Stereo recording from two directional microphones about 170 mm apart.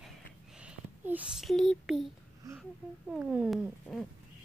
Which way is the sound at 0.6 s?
10° right (ahead or behind).